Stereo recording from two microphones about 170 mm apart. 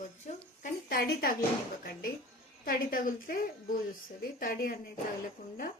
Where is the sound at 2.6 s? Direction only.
55° left (ahead or behind).